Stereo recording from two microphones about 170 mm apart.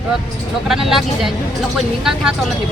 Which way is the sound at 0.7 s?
Centre (ahead or behind).